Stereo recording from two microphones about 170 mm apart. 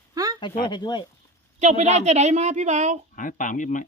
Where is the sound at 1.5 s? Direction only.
40° right (ahead or behind).